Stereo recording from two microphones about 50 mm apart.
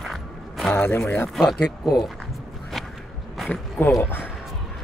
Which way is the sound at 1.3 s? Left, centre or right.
Centre.